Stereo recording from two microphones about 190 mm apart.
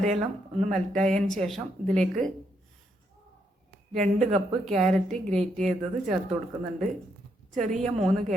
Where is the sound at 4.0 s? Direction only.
40° right (ahead or behind).